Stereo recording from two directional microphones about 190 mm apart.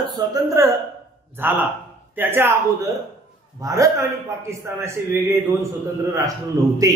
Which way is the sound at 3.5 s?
15° right (ahead or behind).